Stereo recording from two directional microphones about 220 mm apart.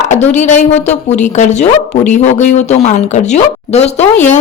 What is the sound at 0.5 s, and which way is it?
A woman's voice, 30° left (ahead or behind).